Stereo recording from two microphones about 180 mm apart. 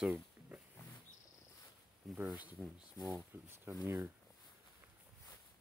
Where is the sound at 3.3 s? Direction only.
10° right (ahead or behind).